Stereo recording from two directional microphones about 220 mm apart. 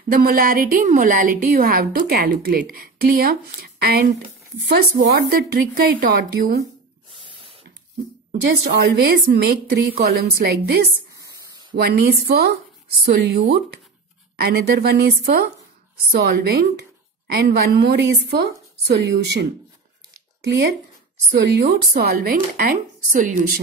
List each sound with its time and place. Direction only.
0.1 s a woman's voice: 40° right (ahead or behind)
7.2 s spray: 25° right (ahead or behind)
8.3 s a woman's voice: 45° right (ahead or behind)
20.4 s a woman's voice: 50° right (ahead or behind)